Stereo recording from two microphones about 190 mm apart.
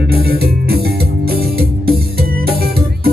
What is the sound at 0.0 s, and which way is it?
Music, 55° right (ahead or behind).